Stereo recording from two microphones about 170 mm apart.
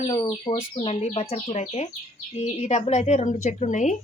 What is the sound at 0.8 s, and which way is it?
A woman's voice, 40° left (ahead or behind).